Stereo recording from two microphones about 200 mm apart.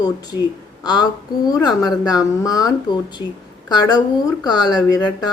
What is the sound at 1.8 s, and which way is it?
A woman's voice, 20° left (ahead or behind).